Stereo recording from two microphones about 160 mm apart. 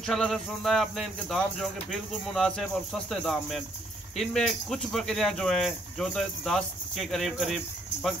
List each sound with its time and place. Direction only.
0.0 s speech: 5° left (ahead or behind)